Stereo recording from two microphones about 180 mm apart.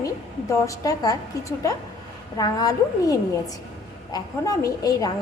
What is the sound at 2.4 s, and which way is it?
Speech, 20° left (ahead or behind).